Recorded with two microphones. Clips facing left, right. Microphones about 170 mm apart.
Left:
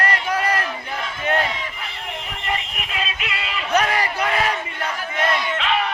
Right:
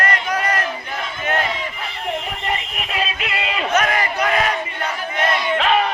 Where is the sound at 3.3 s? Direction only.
40° right (ahead or behind).